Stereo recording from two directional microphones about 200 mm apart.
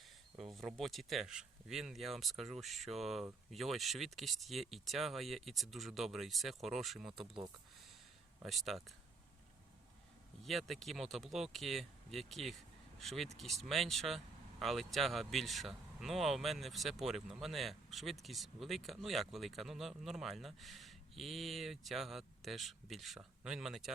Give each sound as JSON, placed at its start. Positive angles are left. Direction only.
{"t": 0.0, "sound": "speech", "side_deg": 0}
{"t": 7.1, "sound": "speech", "side_deg": -25}
{"t": 8.4, "sound": "speech", "side_deg": 0}
{"t": 10.4, "sound": "speech", "side_deg": 0}